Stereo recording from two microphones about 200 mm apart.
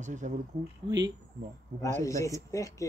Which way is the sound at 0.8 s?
25° right (ahead or behind).